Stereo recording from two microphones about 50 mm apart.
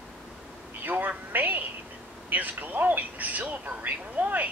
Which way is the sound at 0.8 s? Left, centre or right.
Right.